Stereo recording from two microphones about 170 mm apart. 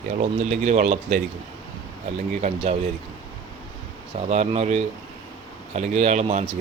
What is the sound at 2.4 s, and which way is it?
Speech, 45° right (ahead or behind).